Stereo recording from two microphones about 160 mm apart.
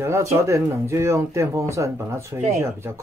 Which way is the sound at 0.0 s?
15° right (ahead or behind).